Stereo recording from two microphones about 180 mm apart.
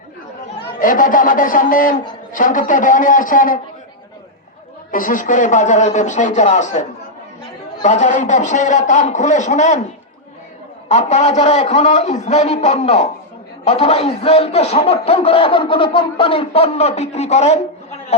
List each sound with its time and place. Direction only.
0.8 s speech: 50° left (ahead or behind)
4.9 s a man's voice: 50° left (ahead or behind)
10.8 s a man's voice: 40° left (ahead or behind)